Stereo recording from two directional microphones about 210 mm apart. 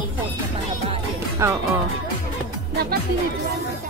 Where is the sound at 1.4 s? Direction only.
15° right (ahead or behind).